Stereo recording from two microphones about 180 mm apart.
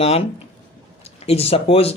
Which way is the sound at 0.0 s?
35° left (ahead or behind).